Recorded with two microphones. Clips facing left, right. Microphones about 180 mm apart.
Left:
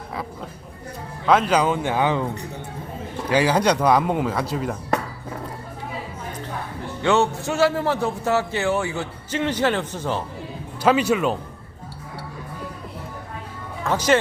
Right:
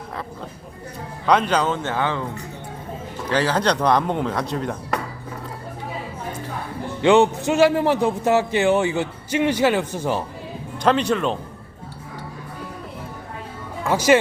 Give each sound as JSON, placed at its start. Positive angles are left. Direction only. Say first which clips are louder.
{"t": 1.3, "sound": "speech", "louder": "left 1 dB", "side_deg": 5}
{"t": 3.2, "sound": "speech", "louder": "left 2 dB", "side_deg": 10}
{"t": 7.0, "sound": "speech", "louder": "right 5 dB", "side_deg": -15}
{"t": 10.8, "sound": "speech", "louder": "left 1 dB", "side_deg": 5}
{"t": 13.8, "sound": "speech", "louder": "right 3 dB", "side_deg": -10}